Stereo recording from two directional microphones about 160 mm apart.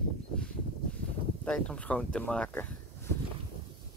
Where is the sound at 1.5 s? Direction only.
5° left (ahead or behind).